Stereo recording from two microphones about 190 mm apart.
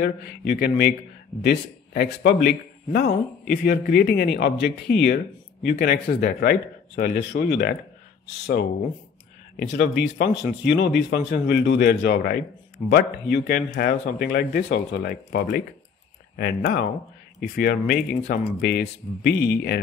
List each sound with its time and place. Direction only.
0.0 s a man's voice: 55° left (ahead or behind)
9.6 s speech: 60° left (ahead or behind)